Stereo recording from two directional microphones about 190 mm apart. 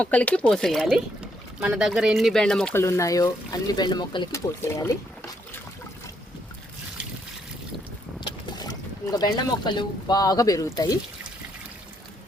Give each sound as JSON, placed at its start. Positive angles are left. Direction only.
{"t": 0.0, "sound": "speech", "side_deg": 5}
{"t": 2.8, "sound": "speech", "side_deg": 15}
{"t": 8.2, "sound": "speech", "side_deg": 20}